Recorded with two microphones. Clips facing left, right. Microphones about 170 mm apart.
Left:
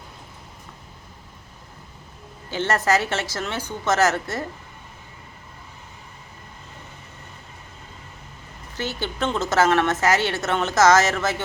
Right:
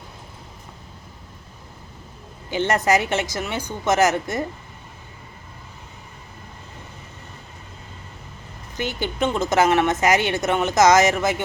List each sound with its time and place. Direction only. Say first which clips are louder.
2.5 s a woman's voice: right 2 dB; 15° right (ahead or behind)
8.7 s a woman's voice: right 2 dB; 15° right (ahead or behind)